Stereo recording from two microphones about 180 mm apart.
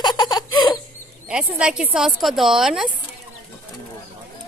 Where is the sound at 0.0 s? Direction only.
25° left (ahead or behind).